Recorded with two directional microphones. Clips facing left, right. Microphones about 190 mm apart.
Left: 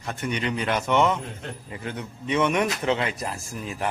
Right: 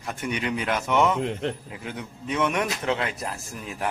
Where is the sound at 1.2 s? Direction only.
90° right.